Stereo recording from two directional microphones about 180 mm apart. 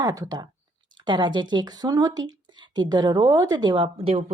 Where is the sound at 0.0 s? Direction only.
20° right (ahead or behind).